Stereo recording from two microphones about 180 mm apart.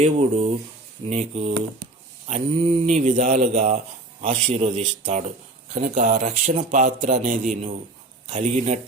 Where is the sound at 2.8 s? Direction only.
45° right (ahead or behind).